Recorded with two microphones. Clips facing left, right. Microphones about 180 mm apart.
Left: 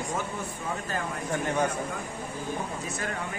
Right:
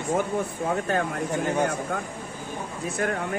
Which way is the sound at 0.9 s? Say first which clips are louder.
Right 8 dB; 65° right (ahead or behind).